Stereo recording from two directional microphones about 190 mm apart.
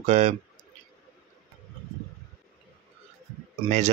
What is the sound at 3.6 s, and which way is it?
Speech, 40° right (ahead or behind).